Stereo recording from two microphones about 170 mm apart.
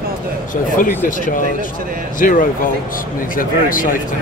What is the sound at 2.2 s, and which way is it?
Speech, 50° left (ahead or behind).